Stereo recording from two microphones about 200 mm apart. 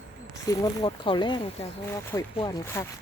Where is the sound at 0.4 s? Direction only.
20° left (ahead or behind).